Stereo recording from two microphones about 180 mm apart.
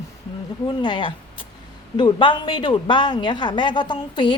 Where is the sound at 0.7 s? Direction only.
25° left (ahead or behind).